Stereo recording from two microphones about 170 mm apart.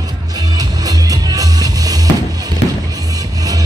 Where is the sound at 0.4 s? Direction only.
25° right (ahead or behind).